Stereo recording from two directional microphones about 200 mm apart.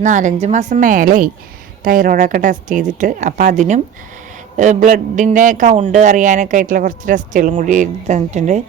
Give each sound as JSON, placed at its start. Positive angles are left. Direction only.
{"t": 0.0, "sound": "speech", "side_deg": -40}